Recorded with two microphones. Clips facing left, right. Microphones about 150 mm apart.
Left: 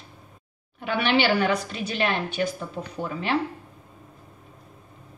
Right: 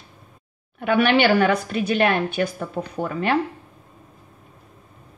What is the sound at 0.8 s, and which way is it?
A woman's voice, 50° right (ahead or behind).